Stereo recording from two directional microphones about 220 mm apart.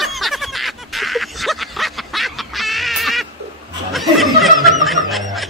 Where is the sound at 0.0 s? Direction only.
Centre (ahead or behind).